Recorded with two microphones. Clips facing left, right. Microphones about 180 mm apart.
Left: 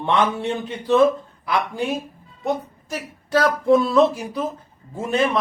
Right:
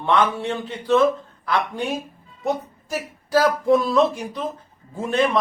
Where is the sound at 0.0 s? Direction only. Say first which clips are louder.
Even; 15° left (ahead or behind).